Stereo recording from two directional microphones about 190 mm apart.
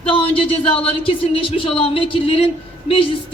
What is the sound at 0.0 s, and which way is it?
Speech, 25° left (ahead or behind).